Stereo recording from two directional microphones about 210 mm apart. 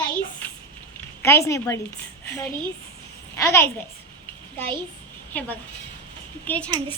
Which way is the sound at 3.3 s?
15° left (ahead or behind).